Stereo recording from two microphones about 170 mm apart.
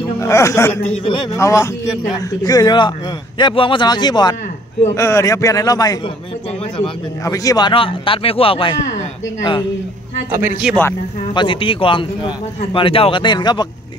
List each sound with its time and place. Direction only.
0.2 s a man's voice: 15° left (ahead or behind)
7.2 s a man's voice: 20° left (ahead or behind)
10.6 s speech: centre (ahead or behind)
11.3 s a man's voice: 30° left (ahead or behind)